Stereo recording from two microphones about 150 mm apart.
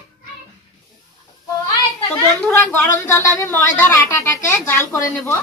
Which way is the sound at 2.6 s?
15° left (ahead or behind).